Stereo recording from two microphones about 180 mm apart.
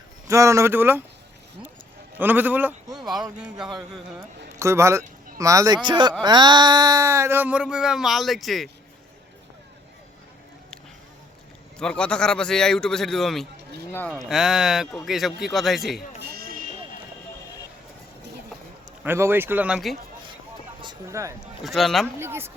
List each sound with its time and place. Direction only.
0.3 s speech: 15° right (ahead or behind)
2.1 s a man's voice: 10° right (ahead or behind)
4.5 s speech: 15° right (ahead or behind); by 8.7 s centre (ahead or behind)
11.8 s a man's voice: 5° left (ahead or behind)
16.3 s a sound: 55° right (ahead or behind)
19.0 s speech: 10° right (ahead or behind)
20.8 s speech: 15° right (ahead or behind)
21.6 s a man's voice: centre (ahead or behind)
22.2 s speech: 15° right (ahead or behind)